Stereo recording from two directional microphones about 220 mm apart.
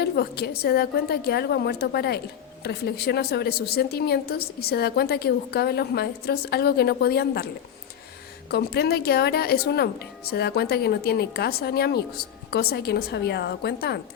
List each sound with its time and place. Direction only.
0.0 s speech: 45° left (ahead or behind)